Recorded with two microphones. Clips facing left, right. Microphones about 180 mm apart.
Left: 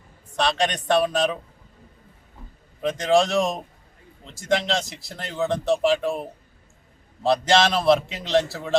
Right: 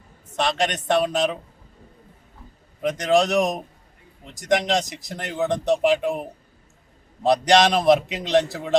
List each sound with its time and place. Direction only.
0.3 s a man's voice: 20° right (ahead or behind)
2.8 s a man's voice: 20° right (ahead or behind)